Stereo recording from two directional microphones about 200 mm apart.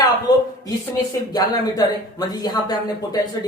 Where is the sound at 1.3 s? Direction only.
20° left (ahead or behind).